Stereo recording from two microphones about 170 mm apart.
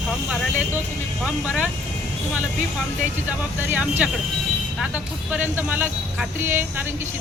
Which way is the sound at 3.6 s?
10° right (ahead or behind).